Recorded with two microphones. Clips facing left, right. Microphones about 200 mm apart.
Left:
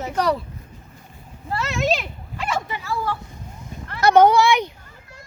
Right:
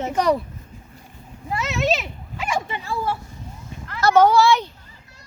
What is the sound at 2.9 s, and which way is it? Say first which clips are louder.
Speech: right 1 dB; 15° right (ahead or behind).